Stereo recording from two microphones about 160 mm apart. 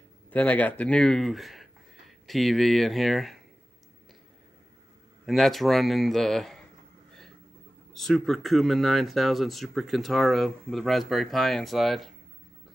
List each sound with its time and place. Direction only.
0.3 s speech: 10° left (ahead or behind)
5.2 s speech: centre (ahead or behind)
7.9 s speech: centre (ahead or behind)